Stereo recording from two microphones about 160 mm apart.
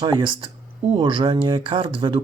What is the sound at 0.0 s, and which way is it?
Speech, 30° right (ahead or behind).